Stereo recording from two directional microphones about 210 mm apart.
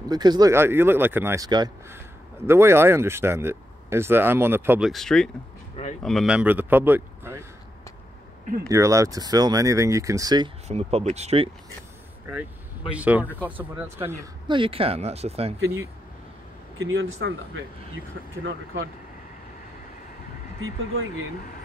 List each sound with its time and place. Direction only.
0.1 s speech: 20° right (ahead or behind)
8.6 s speech: 15° right (ahead or behind)
12.9 s speech: 5° right (ahead or behind)
14.5 s speech: 25° right (ahead or behind)
16.7 s speech: 70° right (ahead or behind)
20.6 s speech: 70° right (ahead or behind)